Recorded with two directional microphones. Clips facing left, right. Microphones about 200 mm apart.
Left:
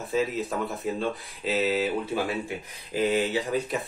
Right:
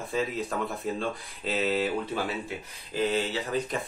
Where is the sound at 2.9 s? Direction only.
15° left (ahead or behind).